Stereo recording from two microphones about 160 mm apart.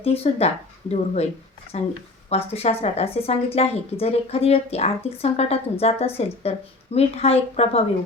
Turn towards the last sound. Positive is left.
turn(degrees=40)  # may be behind; listen again after turning